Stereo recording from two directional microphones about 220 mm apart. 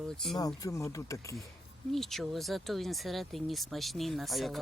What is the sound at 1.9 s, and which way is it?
Speech, centre (ahead or behind).